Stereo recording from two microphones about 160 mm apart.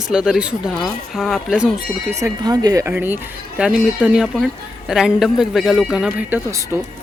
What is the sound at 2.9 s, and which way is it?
Speech, 10° right (ahead or behind).